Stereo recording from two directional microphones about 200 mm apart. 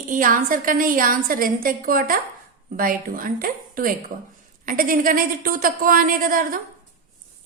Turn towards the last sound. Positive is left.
turn(degrees=-45)  # may be behind; listen again after turning